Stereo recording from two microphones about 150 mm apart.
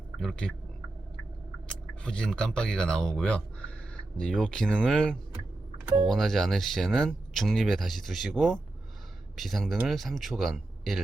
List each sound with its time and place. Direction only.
0.2 s speech: 5° left (ahead or behind)
1.6 s speech: 5° left (ahead or behind)